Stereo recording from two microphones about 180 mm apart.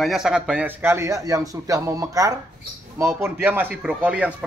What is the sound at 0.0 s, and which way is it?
A man's voice, centre (ahead or behind).